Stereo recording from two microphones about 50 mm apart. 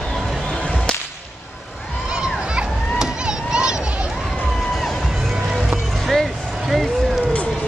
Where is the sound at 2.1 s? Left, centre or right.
Centre.